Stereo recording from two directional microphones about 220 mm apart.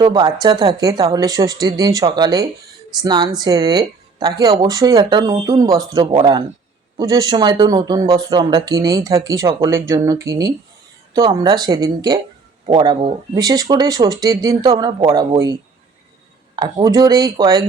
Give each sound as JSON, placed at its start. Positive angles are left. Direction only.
{"t": 0.0, "sound": "speech", "side_deg": -20}
{"t": 16.6, "sound": "speech", "side_deg": -20}